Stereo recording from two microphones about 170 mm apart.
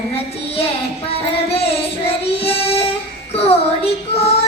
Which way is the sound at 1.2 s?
35° left (ahead or behind).